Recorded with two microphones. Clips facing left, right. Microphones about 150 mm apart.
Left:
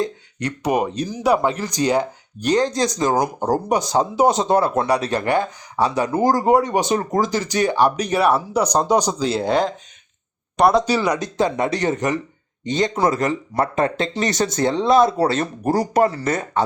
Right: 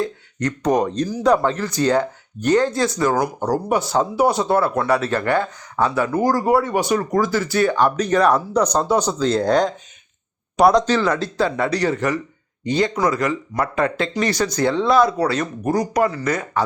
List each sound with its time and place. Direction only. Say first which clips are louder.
0.0 s speech: right 1 dB; 15° left (ahead or behind)